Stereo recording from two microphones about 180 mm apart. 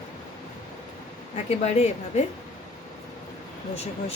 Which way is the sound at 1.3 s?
35° left (ahead or behind).